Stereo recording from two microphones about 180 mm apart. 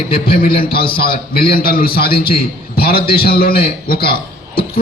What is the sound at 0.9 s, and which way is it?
A man's voice, 55° left (ahead or behind).